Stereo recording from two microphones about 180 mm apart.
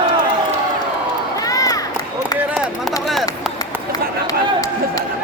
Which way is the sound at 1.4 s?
20° left (ahead or behind).